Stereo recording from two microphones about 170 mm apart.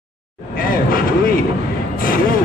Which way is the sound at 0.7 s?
55° left (ahead or behind).